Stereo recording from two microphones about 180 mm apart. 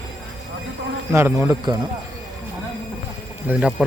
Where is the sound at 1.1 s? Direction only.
15° right (ahead or behind).